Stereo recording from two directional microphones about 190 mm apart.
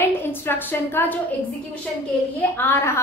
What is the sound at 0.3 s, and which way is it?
Speech, 10° left (ahead or behind).